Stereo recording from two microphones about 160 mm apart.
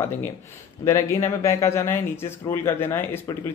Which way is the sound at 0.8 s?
20° left (ahead or behind).